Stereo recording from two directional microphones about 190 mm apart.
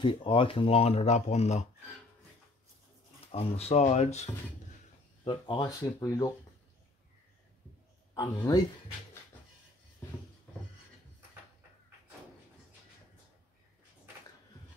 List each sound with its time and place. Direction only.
0.0 s speech: 25° left (ahead or behind)
3.3 s speech: 35° left (ahead or behind)
5.2 s speech: 25° left (ahead or behind)
8.1 s speech: 20° left (ahead or behind)